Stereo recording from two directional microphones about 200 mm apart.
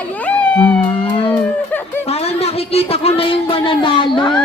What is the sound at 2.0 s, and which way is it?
Speech, 30° left (ahead or behind).